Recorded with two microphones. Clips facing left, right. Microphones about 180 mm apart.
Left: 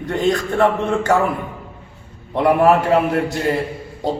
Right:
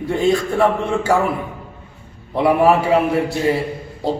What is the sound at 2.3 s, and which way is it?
A man's voice, 5° right (ahead or behind).